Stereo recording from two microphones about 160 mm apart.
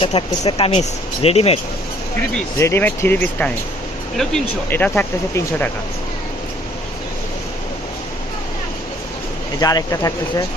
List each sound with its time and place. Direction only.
0.0 s speech: 30° left (ahead or behind)
2.6 s speech: 15° left (ahead or behind)
4.7 s speech: 10° left (ahead or behind)
9.6 s speech: 25° left (ahead or behind)